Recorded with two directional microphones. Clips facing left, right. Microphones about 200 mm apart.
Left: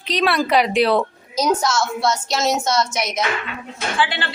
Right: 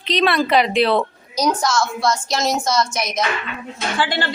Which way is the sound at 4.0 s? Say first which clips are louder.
Right 1 dB; 40° right (ahead or behind).